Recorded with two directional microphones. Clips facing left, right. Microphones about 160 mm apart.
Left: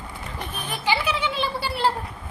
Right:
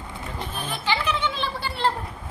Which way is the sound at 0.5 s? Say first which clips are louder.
Left 2 dB; 15° left (ahead or behind).